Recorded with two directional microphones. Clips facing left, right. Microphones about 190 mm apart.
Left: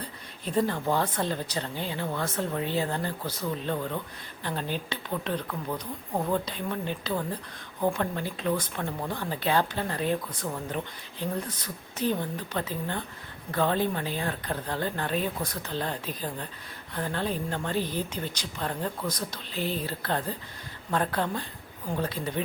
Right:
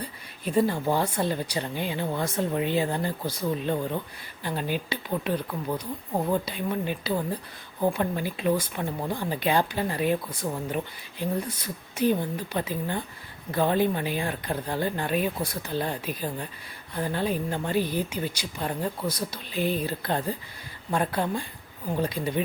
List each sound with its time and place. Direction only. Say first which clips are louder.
0.0 s speech: right 3 dB; 10° right (ahead or behind)